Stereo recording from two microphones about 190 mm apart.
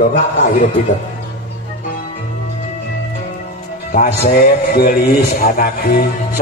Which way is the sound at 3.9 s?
50° left (ahead or behind).